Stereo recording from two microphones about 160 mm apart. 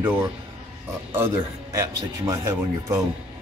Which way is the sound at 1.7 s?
20° right (ahead or behind).